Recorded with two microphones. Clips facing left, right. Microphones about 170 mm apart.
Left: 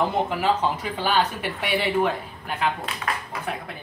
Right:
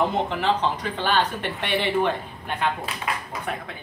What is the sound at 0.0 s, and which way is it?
Speech, 5° left (ahead or behind).